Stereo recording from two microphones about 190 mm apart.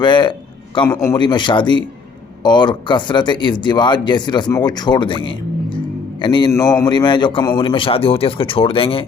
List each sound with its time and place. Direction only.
0.0 s speech: 25° left (ahead or behind)